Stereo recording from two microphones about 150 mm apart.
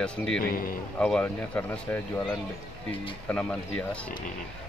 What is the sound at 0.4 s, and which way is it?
Speech, 75° left (ahead or behind).